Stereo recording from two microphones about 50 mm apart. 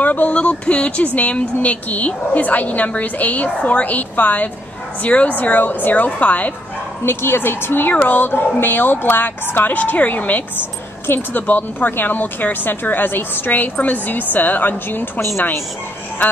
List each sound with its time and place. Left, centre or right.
0.0 s a woman's voice: left
7.1 s a woman's voice: left